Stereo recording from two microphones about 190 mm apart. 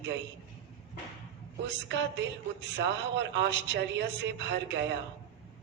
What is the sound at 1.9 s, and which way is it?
Speech, 70° right (ahead or behind).